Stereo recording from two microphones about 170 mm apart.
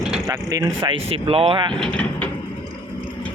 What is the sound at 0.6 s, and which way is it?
Speech, 30° right (ahead or behind).